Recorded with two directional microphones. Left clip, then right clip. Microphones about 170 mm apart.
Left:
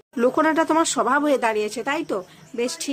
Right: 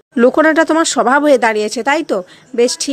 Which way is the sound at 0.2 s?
35° right (ahead or behind).